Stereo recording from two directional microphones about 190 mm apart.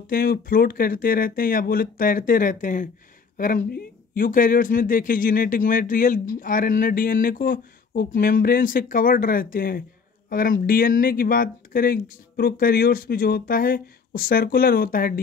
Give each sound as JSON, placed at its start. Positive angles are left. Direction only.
{"t": 0.0, "sound": "speech", "side_deg": 50}